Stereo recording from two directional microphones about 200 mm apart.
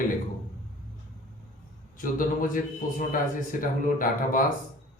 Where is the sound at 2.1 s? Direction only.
45° left (ahead or behind).